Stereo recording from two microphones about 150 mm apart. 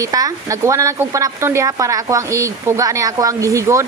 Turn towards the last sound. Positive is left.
turn(degrees=-20)  # may be behind; listen again after turning